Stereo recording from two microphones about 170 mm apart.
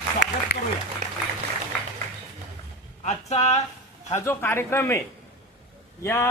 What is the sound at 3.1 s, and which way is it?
Speech, 40° left (ahead or behind).